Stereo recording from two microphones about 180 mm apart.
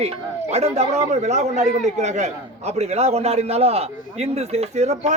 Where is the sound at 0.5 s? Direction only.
35° right (ahead or behind).